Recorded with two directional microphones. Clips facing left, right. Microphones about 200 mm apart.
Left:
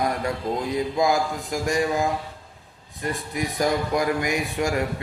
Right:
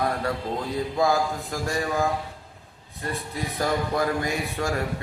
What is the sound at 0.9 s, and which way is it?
Speech, 15° left (ahead or behind).